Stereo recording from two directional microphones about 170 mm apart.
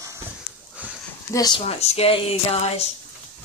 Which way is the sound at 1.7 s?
35° left (ahead or behind).